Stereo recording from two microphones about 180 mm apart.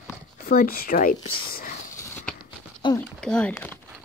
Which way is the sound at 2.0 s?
10° left (ahead or behind).